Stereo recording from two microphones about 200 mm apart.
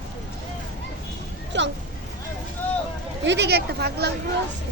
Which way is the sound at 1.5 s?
65° right (ahead or behind).